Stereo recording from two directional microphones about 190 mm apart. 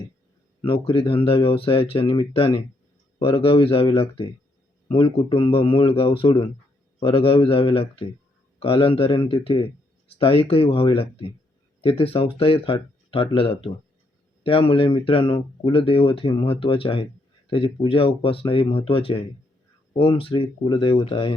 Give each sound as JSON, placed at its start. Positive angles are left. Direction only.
{"t": 0.6, "sound": "speech", "side_deg": 30}